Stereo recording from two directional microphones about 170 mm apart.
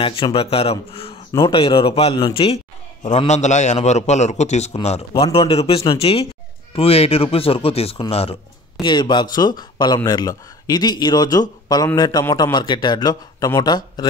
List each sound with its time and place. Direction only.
0.0 s a man's voice: 30° left (ahead or behind)